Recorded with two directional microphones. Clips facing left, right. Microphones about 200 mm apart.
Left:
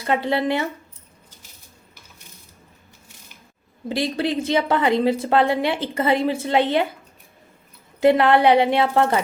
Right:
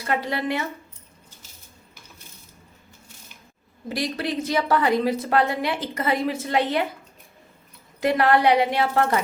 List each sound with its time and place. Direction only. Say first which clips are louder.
0.0 s a woman's voice: left 4 dB; 25° left (ahead or behind)
3.8 s a woman's voice: left 4 dB; 25° left (ahead or behind)
8.0 s a woman's voice: left 4 dB; 25° left (ahead or behind)